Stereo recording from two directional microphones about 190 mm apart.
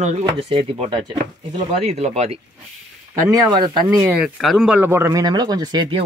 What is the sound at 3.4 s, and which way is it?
Speech, 20° right (ahead or behind).